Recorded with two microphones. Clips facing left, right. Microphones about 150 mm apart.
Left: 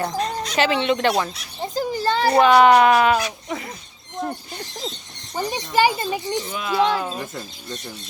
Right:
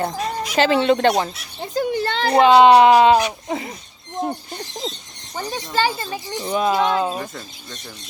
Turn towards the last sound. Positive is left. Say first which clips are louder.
# right 3 dB
turn(degrees=-25)  # may be behind; listen again after turning